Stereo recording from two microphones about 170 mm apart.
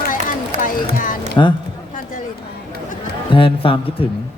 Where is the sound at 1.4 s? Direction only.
20° left (ahead or behind).